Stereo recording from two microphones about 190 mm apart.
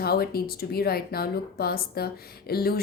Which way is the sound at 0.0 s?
55° left (ahead or behind).